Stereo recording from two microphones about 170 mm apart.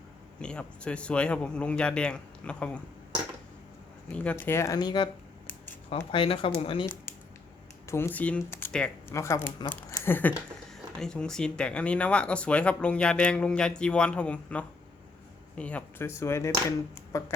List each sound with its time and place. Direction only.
0.3 s speech: 5° left (ahead or behind)
4.1 s speech: 5° left (ahead or behind); by 5.0 s 25° left (ahead or behind)
6.1 s speech: 30° left (ahead or behind)
7.9 s speech: 15° left (ahead or behind)